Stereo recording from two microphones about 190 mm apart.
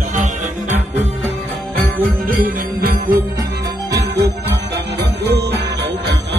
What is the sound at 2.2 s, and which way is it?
Jingle bell, 50° right (ahead or behind).